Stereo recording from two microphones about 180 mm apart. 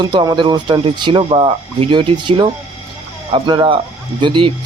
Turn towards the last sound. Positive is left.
turn(degrees=-25)  # may be behind; listen again after turning